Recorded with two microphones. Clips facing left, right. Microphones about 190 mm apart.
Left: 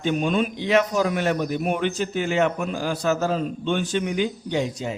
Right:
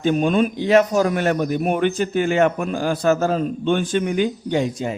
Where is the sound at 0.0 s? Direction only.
45° right (ahead or behind).